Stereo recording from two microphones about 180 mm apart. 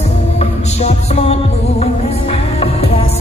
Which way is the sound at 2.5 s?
30° left (ahead or behind).